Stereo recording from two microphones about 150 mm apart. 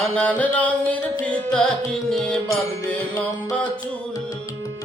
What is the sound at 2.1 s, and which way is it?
Music, centre (ahead or behind).